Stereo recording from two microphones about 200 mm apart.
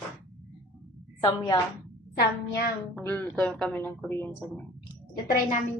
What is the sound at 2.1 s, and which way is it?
Speech, 55° left (ahead or behind).